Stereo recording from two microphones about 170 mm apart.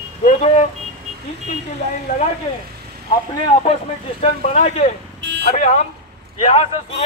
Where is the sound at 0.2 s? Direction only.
45° left (ahead or behind).